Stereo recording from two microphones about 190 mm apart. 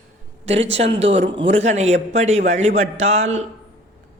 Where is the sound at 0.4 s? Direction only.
35° right (ahead or behind).